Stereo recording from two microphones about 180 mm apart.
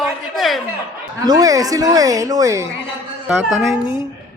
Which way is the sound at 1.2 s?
20° right (ahead or behind).